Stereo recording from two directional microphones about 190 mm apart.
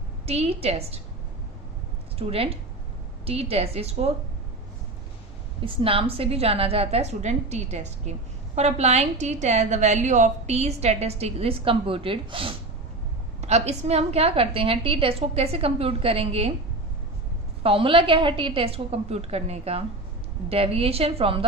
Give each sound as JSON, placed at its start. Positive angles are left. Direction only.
{"t": 0.3, "sound": "a woman's voice", "side_deg": -30}
{"t": 2.1, "sound": "a woman's voice", "side_deg": -30}
{"t": 5.6, "sound": "a woman's voice", "side_deg": -30}
{"t": 17.6, "sound": "a woman's voice", "side_deg": -30}